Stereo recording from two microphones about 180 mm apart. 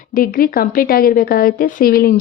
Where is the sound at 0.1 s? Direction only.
50° left (ahead or behind).